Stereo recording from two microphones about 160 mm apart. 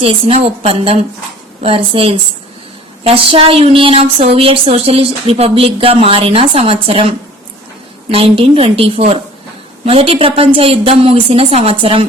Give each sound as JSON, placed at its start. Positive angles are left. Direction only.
{"t": 0.0, "sound": "a woman's voice", "side_deg": -35}
{"t": 8.1, "sound": "a woman's voice", "side_deg": -35}